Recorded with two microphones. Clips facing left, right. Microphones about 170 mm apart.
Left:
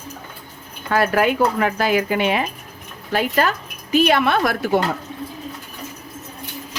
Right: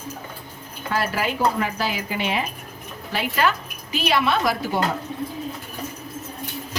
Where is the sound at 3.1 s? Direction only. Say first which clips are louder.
Left 3 dB; 45° left (ahead or behind).